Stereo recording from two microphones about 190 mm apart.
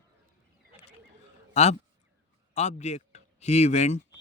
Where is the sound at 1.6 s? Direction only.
35° left (ahead or behind).